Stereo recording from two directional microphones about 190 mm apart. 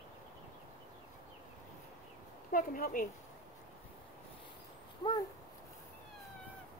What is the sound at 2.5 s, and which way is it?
Speech, 45° left (ahead or behind).